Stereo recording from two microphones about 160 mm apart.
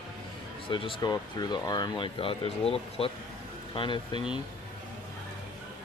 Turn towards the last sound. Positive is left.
turn(degrees=30)  # may be behind; listen again after turning